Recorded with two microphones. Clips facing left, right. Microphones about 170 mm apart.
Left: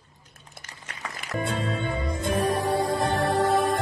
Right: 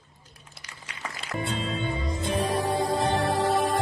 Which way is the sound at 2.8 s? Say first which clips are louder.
Even; 20° right (ahead or behind).